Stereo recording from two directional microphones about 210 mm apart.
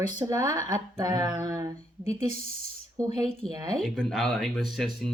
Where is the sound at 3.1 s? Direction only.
30° left (ahead or behind).